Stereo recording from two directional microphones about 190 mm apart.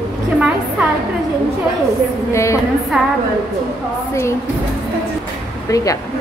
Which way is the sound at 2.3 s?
15° left (ahead or behind).